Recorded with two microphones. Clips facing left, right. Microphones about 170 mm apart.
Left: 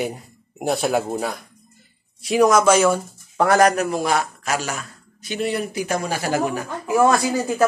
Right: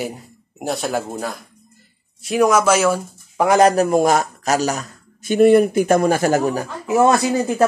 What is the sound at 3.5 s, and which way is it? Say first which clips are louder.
Speech: right 3 dB; 25° right (ahead or behind).